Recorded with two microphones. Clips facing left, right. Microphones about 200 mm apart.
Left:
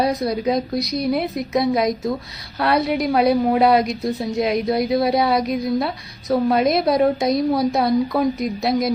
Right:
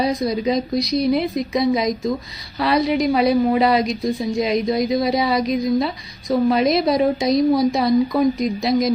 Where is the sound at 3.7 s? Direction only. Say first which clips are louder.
Left 1 dB; 60° left (ahead or behind).